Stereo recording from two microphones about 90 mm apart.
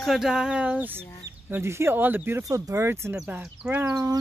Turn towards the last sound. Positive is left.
turn(degrees=-35)  # may be behind; listen again after turning